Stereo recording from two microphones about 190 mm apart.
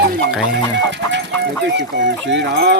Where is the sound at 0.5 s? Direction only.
65° right (ahead or behind).